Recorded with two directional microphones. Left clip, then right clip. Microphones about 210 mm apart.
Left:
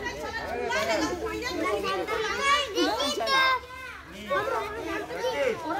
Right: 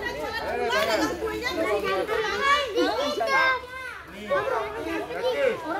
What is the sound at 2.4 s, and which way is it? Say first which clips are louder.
Children playing: right 2 dB; 45° left (ahead or behind).